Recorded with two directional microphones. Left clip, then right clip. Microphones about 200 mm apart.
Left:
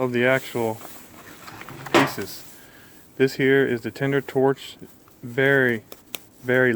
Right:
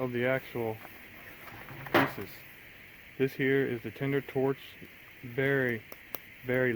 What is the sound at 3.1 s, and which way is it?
Speech, 30° left (ahead or behind).